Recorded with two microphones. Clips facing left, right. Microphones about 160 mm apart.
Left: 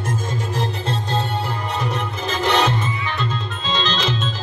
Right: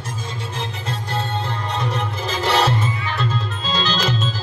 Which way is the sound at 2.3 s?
5° right (ahead or behind).